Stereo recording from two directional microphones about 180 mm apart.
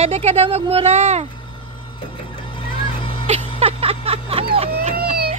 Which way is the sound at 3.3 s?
35° right (ahead or behind).